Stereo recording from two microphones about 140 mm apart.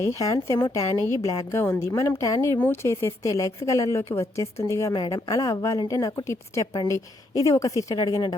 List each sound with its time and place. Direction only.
0.0 s a woman's voice: 25° left (ahead or behind)